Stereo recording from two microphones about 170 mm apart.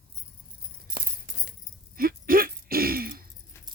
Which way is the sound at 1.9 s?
60° right (ahead or behind).